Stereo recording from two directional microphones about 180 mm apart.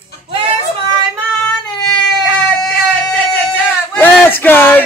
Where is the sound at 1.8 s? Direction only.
5° left (ahead or behind).